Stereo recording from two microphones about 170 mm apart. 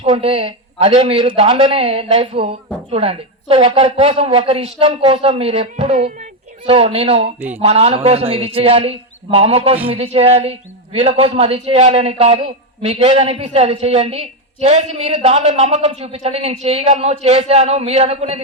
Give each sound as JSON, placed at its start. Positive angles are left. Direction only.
{"t": 0.0, "sound": "a woman's voice", "side_deg": -35}
{"t": 7.3, "sound": "speech", "side_deg": -10}
{"t": 7.6, "sound": "a woman's voice", "side_deg": -40}